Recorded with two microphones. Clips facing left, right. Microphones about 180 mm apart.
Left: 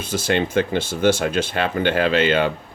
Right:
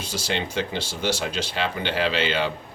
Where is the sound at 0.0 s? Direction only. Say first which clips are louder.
Left 7 dB; 50° left (ahead or behind).